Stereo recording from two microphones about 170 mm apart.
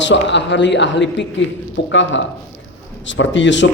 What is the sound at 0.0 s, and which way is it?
A man's voice, 90° left.